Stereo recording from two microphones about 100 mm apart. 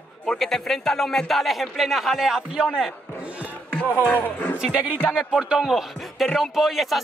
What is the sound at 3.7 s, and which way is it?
Speech, 15° left (ahead or behind).